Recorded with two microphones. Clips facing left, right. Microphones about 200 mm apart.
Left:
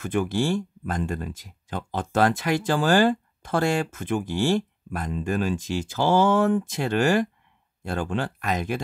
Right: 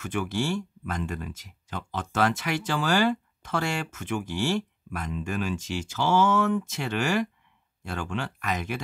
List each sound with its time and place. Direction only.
0.0 s speech: 35° left (ahead or behind)